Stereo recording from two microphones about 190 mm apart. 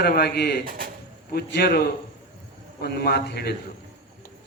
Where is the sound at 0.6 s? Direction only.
50° right (ahead or behind).